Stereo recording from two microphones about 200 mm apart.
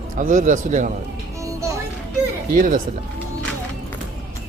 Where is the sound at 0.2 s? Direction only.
40° right (ahead or behind).